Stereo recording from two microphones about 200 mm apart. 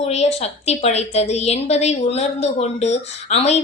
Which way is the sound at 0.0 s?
35° left (ahead or behind).